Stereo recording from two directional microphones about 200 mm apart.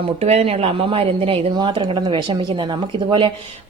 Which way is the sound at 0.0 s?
30° right (ahead or behind).